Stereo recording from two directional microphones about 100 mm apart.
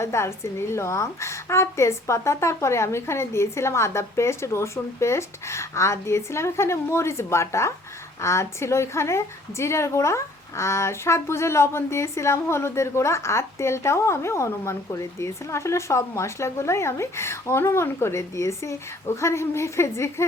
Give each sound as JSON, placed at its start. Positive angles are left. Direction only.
{"t": 0.0, "sound": "a woman's voice", "side_deg": 25}